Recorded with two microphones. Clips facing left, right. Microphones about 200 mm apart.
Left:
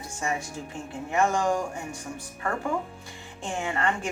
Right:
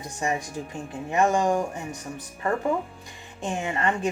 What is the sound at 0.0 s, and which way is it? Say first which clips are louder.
A woman's voice: right 3 dB; 15° right (ahead or behind).